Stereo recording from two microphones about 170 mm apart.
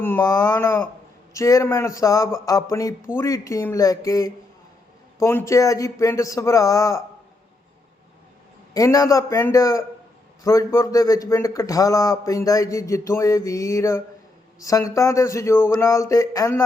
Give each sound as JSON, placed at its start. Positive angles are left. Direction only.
{"t": 0.0, "sound": "a man's voice", "side_deg": 15}
{"t": 8.7, "sound": "a man's voice", "side_deg": 20}